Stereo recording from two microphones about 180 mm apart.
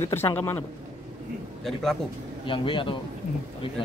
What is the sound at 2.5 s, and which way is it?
Speech, 30° left (ahead or behind).